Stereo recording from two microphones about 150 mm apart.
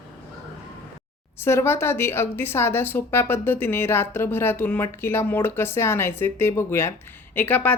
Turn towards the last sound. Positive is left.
turn(degrees=10)  # may be behind; listen again after turning